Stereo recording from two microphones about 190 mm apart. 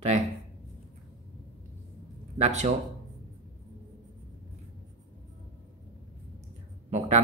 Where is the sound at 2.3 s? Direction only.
35° right (ahead or behind).